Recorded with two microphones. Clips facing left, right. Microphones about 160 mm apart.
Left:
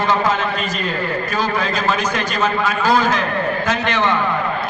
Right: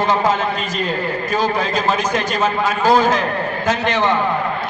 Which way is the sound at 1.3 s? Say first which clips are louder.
Right 4 dB; 25° right (ahead or behind).